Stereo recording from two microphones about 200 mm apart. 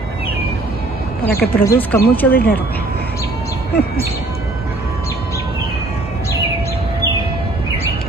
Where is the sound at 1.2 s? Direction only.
50° left (ahead or behind).